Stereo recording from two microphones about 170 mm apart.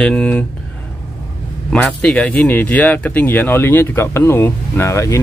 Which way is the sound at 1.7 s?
5° left (ahead or behind).